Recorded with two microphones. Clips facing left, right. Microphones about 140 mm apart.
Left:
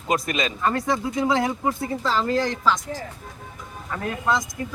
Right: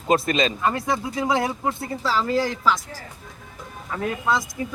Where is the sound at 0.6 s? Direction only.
10° right (ahead or behind).